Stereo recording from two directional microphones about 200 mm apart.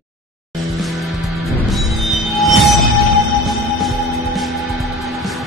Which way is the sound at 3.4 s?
Centre (ahead or behind).